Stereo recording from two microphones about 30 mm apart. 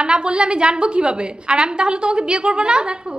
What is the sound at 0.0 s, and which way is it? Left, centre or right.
A woman's voice, right.